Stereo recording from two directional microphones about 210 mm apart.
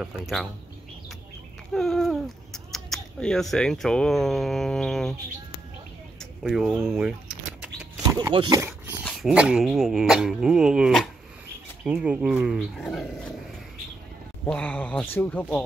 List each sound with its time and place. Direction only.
0.0 s speech: centre (ahead or behind)
1.7 s speech: centre (ahead or behind)
6.1 s a sound: centre (ahead or behind)
8.1 s speech: 20° right (ahead or behind)
9.0 s speech: 5° right (ahead or behind)
14.4 s speech: 5° left (ahead or behind)